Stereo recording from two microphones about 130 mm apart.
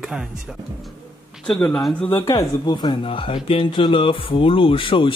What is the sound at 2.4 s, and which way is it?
Speech, 35° left (ahead or behind).